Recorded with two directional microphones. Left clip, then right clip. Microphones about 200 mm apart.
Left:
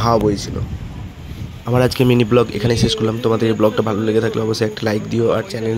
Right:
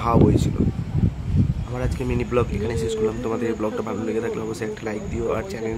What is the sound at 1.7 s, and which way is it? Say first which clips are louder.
Speech: left 17 dB; 40° left (ahead or behind).